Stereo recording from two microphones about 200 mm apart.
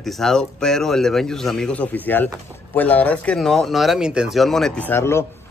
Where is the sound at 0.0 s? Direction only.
Centre (ahead or behind).